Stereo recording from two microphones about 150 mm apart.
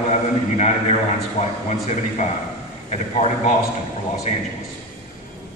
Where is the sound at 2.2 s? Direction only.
50° left (ahead or behind).